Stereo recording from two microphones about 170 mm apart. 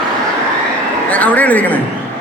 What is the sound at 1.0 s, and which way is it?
Speech, 10° left (ahead or behind).